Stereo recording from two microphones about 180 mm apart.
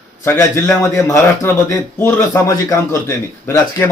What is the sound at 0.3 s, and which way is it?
A man's voice, 15° left (ahead or behind).